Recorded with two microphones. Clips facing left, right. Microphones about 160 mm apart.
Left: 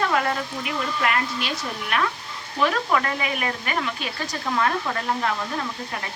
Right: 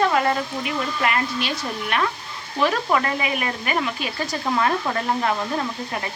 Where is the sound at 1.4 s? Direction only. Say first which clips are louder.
Right 3 dB; centre (ahead or behind).